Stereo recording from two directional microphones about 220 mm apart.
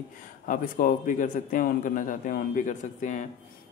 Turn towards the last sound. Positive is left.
turn(degrees=35)  # may be behind; listen again after turning